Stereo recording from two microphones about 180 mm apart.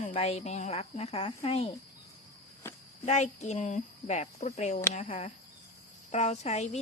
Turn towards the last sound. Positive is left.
turn(degrees=40)  # may be behind; listen again after turning